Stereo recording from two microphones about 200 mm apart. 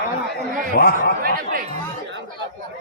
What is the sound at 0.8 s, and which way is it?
Speech, 50° left (ahead or behind).